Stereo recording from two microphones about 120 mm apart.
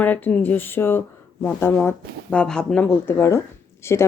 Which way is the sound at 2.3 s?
5° left (ahead or behind).